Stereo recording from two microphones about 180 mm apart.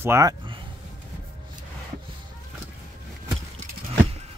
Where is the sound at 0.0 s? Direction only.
15° right (ahead or behind).